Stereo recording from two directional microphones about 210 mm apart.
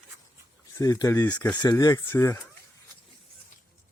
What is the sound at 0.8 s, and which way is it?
Speech, 15° left (ahead or behind).